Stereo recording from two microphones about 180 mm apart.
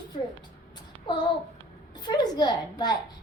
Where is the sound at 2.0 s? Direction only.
25° left (ahead or behind).